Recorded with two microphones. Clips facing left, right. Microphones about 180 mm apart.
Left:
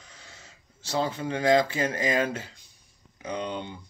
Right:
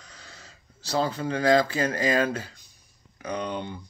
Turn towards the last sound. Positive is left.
turn(degrees=20)  # may be behind; listen again after turning